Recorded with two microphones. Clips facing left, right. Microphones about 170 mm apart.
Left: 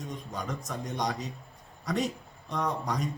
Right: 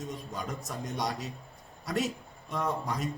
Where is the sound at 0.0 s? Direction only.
Centre (ahead or behind).